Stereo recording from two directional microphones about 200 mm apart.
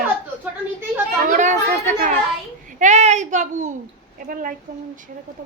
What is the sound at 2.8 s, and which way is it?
A woman's voice, 35° right (ahead or behind).